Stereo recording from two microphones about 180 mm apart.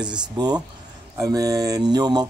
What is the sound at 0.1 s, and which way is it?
Speech, 25° right (ahead or behind).